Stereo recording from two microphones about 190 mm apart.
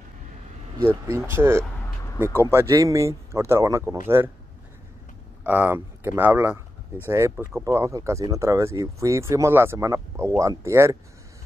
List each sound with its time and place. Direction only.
1.0 s speech: 15° right (ahead or behind)
5.4 s speech: 10° right (ahead or behind)